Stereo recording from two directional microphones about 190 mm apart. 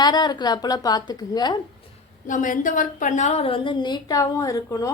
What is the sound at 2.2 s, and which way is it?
A woman's voice, 45° left (ahead or behind).